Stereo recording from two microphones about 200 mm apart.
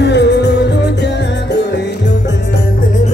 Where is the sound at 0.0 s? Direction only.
60° left (ahead or behind).